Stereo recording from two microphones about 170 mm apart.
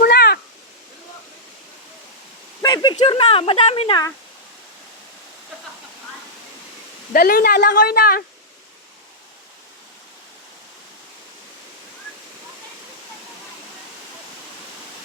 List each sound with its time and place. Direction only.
0.0 s cat: 70° left (ahead or behind)
2.6 s speech: 20° left (ahead or behind)
7.1 s speech: 60° left (ahead or behind)